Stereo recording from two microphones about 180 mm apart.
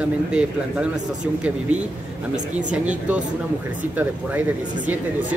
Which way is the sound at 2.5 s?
10° right (ahead or behind).